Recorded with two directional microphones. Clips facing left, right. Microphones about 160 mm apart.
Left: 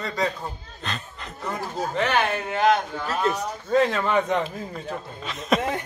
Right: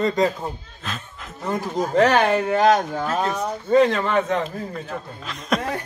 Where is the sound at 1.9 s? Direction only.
40° right (ahead or behind).